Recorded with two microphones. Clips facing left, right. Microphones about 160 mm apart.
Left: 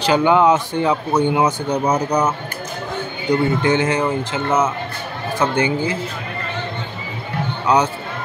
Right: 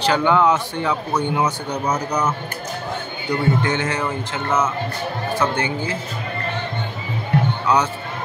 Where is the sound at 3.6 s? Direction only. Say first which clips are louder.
Left 5 dB; 15° left (ahead or behind).